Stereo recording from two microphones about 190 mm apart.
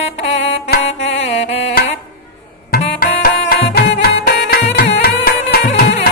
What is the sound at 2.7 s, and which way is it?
Music, 50° left (ahead or behind).